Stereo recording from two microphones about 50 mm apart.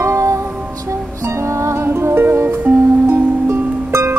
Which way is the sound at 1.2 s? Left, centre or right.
Right.